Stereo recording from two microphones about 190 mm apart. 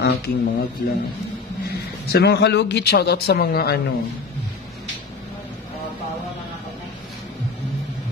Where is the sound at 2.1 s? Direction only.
55° left (ahead or behind).